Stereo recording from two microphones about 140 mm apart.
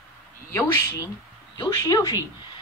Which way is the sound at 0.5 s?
20° left (ahead or behind).